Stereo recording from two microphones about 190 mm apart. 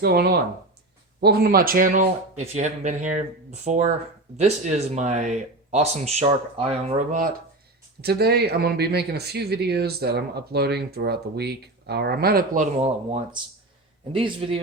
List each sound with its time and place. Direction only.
0.0 s speech: 55° right (ahead or behind)
2.4 s speech: 35° right (ahead or behind)
8.0 s speech: 55° right (ahead or behind)
14.1 s speech: 25° right (ahead or behind)